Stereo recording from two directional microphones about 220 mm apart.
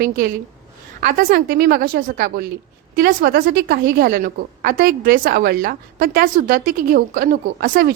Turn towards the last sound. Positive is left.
turn(degrees=-40)  # may be behind; listen again after turning